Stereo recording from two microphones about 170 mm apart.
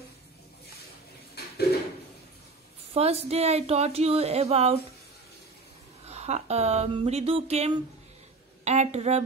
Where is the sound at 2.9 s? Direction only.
35° right (ahead or behind).